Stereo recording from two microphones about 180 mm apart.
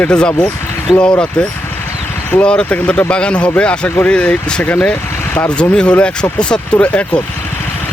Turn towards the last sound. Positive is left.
turn(degrees=5)  # may be behind; listen again after turning